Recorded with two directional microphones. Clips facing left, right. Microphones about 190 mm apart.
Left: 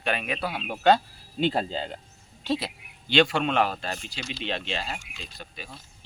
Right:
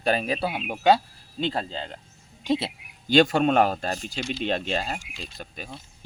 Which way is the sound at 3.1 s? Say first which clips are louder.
Right 4 dB; 40° right (ahead or behind).